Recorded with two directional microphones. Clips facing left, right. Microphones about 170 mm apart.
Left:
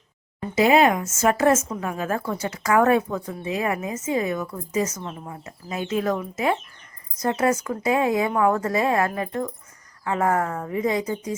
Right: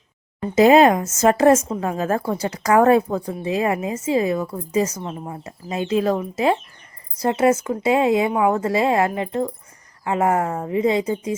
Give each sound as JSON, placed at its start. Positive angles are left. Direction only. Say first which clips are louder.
{"t": 0.5, "sound": "a woman's voice", "louder": "right 5 dB", "side_deg": -35}
{"t": 8.3, "sound": "a woman's voice", "louder": "right 2 dB", "side_deg": -15}
{"t": 8.6, "sound": "a woman's voice", "louder": "right 3 dB", "side_deg": -25}